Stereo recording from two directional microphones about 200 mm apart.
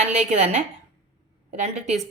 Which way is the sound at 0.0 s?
35° right (ahead or behind).